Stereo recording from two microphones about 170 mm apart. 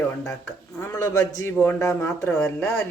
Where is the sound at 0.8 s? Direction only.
20° left (ahead or behind).